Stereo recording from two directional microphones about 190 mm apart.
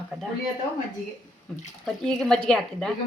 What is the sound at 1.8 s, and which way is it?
Speech, centre (ahead or behind).